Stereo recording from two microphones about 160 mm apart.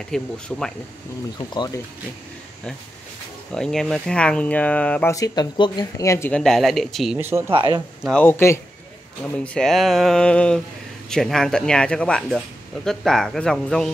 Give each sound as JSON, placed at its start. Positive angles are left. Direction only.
{"t": 0.1, "sound": "speech", "side_deg": 5}
{"t": 1.5, "sound": "speech", "side_deg": 25}
{"t": 3.5, "sound": "speech", "side_deg": 5}
{"t": 5.1, "sound": "speech", "side_deg": 25}
{"t": 6.3, "sound": "speech", "side_deg": 5}
{"t": 7.2, "sound": "speech", "side_deg": -15}
{"t": 7.5, "sound": "speech", "side_deg": -30}
{"t": 8.0, "sound": "speech", "side_deg": 5}